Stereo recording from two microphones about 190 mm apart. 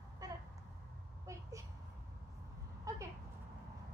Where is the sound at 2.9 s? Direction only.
15° right (ahead or behind).